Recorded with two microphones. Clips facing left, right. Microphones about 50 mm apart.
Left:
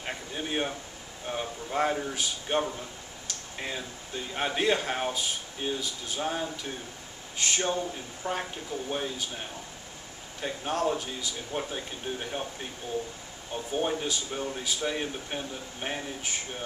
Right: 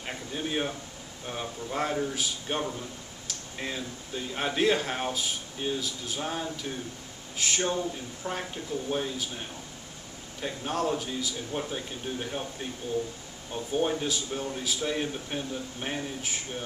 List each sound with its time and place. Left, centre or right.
0.0 s a sound: centre
1.3 s speech: centre
10.4 s speech: centre
13.7 s speech: centre